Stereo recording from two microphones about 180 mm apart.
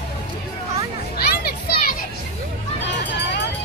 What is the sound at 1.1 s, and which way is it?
Children playing, 60° left (ahead or behind).